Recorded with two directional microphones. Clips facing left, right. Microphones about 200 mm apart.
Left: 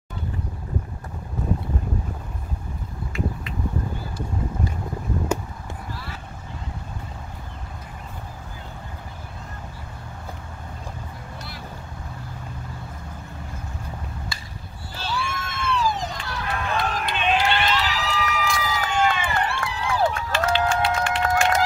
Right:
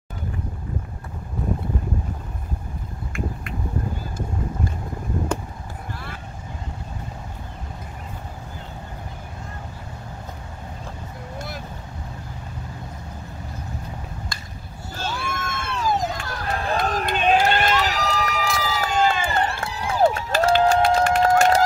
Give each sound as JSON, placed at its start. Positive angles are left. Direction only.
{"t": 5.9, "sound": "a sound", "side_deg": -50}
{"t": 11.3, "sound": "vehicle", "side_deg": -50}
{"t": 15.0, "sound": "run", "side_deg": -45}